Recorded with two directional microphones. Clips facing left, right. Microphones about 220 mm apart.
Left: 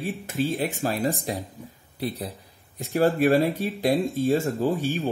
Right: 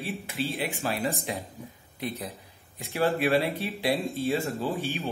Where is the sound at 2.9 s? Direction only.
45° left (ahead or behind).